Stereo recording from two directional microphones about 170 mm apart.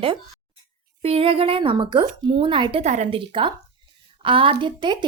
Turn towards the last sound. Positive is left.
turn(degrees=-25)  # may be behind; listen again after turning